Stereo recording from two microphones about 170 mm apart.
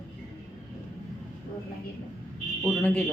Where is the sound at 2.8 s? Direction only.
10° left (ahead or behind).